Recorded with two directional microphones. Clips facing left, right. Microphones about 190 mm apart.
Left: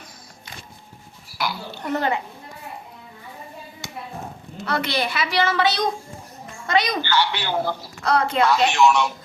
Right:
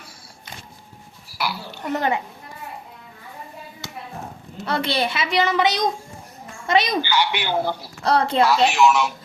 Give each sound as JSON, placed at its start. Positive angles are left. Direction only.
{"t": 1.4, "sound": "a woman's voice", "side_deg": -5}
{"t": 4.6, "sound": "a woman's voice", "side_deg": -30}
{"t": 8.0, "sound": "a woman's voice", "side_deg": -30}
{"t": 8.7, "sound": "speech", "side_deg": 0}